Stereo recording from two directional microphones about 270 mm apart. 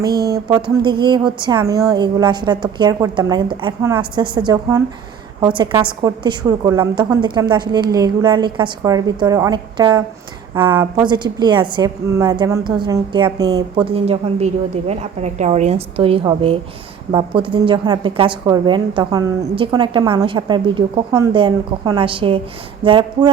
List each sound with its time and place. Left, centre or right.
0.0 s speech: right
0.4 s a woman's voice: centre
22.8 s a sound: centre